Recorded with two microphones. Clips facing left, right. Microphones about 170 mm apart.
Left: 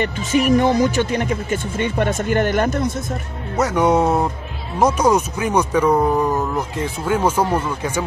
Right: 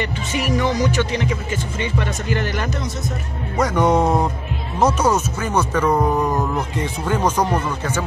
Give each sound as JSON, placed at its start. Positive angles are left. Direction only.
{"t": 0.5, "sound": "speech", "side_deg": 50}
{"t": 3.5, "sound": "speech", "side_deg": 10}